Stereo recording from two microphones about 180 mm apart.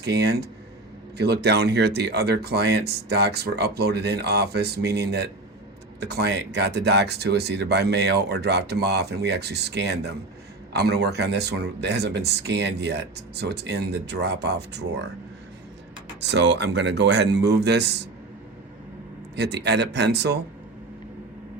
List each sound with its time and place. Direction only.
0.0 s speech: 65° right (ahead or behind)
16.2 s speech: 75° right (ahead or behind)
19.4 s speech: 70° right (ahead or behind)